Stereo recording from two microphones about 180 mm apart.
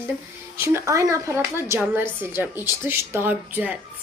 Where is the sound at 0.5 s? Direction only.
15° right (ahead or behind).